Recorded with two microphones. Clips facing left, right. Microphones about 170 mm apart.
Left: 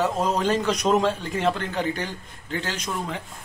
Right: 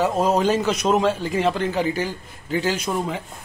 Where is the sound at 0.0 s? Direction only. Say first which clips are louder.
Right 4 dB; 10° right (ahead or behind).